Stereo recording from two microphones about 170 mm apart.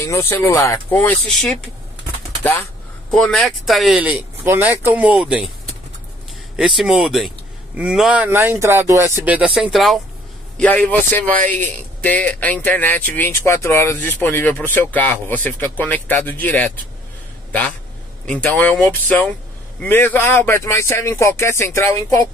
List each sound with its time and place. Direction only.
0.0 s speech: 15° left (ahead or behind)
3.1 s speech: 5° left (ahead or behind)
6.5 s speech: 5° right (ahead or behind); by 22.2 s 15° left (ahead or behind)